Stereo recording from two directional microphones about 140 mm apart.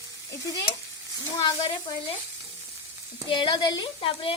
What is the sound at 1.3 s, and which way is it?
Speech, 30° left (ahead or behind).